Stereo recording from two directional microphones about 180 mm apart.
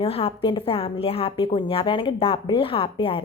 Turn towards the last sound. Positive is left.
turn(degrees=30)  # may be behind; listen again after turning